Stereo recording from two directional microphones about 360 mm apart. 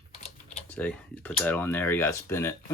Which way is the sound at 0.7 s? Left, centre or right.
Centre.